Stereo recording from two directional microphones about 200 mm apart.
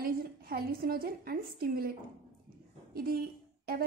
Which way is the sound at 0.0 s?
50° right (ahead or behind).